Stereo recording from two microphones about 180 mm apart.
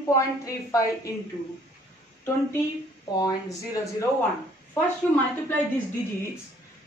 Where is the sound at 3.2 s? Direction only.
20° left (ahead or behind).